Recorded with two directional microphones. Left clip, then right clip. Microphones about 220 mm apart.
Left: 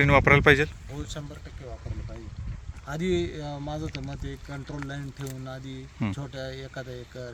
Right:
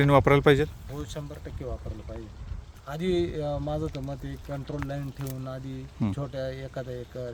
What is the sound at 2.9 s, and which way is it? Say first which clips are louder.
Speech: even; 10° right (ahead or behind).